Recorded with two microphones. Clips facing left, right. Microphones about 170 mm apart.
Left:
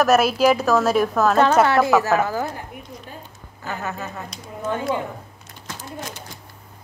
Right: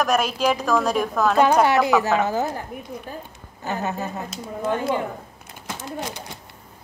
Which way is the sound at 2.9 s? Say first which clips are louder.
Right 5 dB; 65° right (ahead or behind).